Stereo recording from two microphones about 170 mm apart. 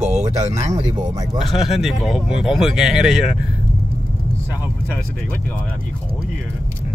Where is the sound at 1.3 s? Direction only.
Centre (ahead or behind).